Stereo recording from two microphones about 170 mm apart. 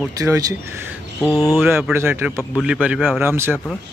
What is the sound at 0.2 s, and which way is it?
Speech, 20° right (ahead or behind).